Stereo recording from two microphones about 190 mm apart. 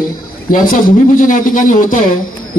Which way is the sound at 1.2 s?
45° left (ahead or behind).